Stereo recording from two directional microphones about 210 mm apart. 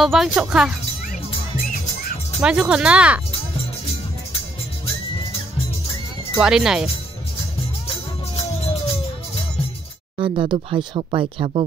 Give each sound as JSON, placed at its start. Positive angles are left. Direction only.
{"t": 0.0, "sound": "speech", "side_deg": 0}
{"t": 2.4, "sound": "speech", "side_deg": -5}
{"t": 6.3, "sound": "speech", "side_deg": -5}
{"t": 10.1, "sound": "speech", "side_deg": -25}